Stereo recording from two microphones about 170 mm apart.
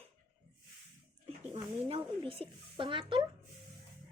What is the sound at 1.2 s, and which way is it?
Speech, 35° right (ahead or behind).